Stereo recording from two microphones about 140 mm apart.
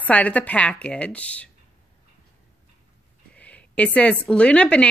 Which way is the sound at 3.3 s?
10° left (ahead or behind).